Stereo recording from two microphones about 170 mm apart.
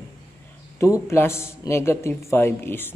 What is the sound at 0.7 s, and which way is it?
A man's voice, 15° left (ahead or behind).